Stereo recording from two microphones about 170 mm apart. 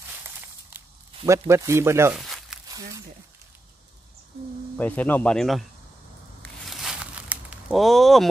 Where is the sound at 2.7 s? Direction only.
20° right (ahead or behind).